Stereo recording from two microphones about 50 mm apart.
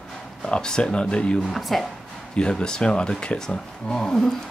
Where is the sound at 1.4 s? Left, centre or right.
Centre.